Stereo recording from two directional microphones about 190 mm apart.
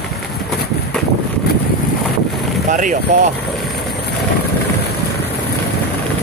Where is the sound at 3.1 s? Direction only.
40° right (ahead or behind).